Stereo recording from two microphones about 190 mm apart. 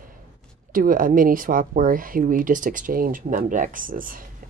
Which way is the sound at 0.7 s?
45° right (ahead or behind).